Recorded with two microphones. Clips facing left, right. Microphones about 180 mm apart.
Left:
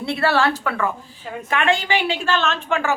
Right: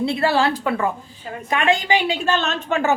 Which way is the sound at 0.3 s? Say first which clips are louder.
Left 2 dB; 30° right (ahead or behind).